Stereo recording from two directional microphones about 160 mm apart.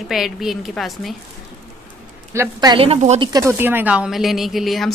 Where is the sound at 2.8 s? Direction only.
35° right (ahead or behind).